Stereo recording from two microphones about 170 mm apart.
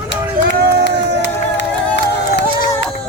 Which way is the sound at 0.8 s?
90° left.